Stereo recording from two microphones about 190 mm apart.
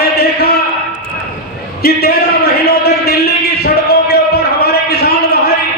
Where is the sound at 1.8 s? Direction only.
55° left (ahead or behind).